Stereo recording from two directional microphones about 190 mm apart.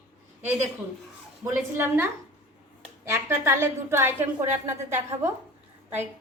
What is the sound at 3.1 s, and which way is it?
A woman's voice, 15° right (ahead or behind).